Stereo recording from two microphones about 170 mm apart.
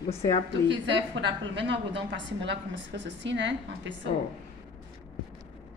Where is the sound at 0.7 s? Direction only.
90° right.